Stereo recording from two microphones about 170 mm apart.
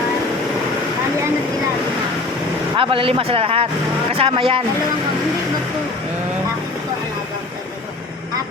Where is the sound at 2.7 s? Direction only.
30° right (ahead or behind).